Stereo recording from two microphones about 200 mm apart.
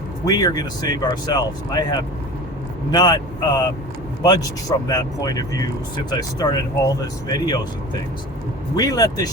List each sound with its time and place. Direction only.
0.3 s speech: 20° left (ahead or behind)
8.7 s speech: 20° left (ahead or behind)